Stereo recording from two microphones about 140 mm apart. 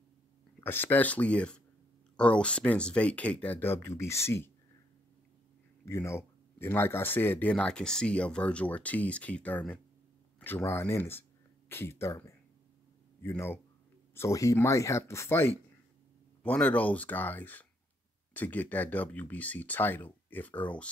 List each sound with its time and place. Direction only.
0.7 s speech: 15° left (ahead or behind)
5.9 s speech: 20° left (ahead or behind)